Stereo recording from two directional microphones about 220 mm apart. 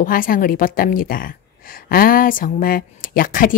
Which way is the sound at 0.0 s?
40° left (ahead or behind).